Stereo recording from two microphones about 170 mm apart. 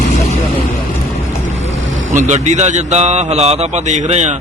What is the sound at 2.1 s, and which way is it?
Speech, 45° right (ahead or behind).